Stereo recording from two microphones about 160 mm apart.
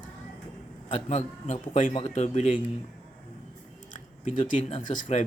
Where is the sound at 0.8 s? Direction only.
50° left (ahead or behind).